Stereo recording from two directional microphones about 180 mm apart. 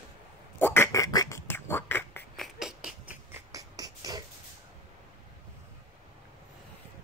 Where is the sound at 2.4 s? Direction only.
Centre (ahead or behind).